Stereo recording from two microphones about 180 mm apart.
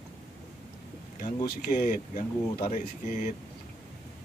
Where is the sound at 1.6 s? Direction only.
50° left (ahead or behind).